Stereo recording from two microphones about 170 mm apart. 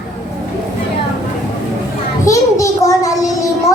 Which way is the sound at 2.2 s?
20° left (ahead or behind).